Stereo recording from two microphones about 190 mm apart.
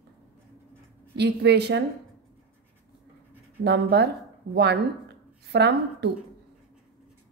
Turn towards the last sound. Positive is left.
turn(degrees=-60)  # may be behind; listen again after turning